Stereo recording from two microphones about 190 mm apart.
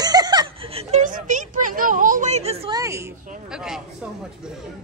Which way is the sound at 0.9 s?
40° right (ahead or behind).